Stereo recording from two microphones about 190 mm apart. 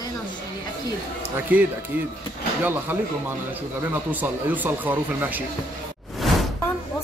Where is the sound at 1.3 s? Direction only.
10° right (ahead or behind).